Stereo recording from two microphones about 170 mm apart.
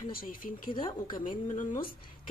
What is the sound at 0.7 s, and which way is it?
Speech, 30° left (ahead or behind).